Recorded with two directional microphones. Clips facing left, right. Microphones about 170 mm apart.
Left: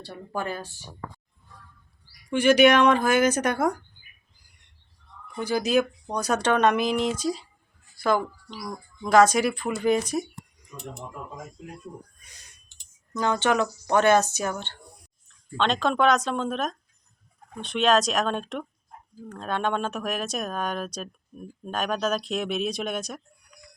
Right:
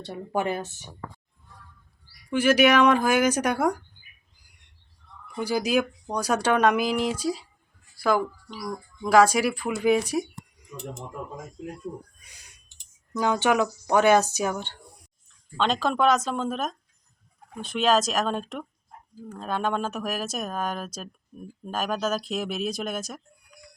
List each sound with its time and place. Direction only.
0.0 s speech: 20° right (ahead or behind)
2.3 s speech: 5° right (ahead or behind)
5.4 s speech: 10° right (ahead or behind)
13.1 s speech: 10° right (ahead or behind)
15.5 s speech: 5° right (ahead or behind)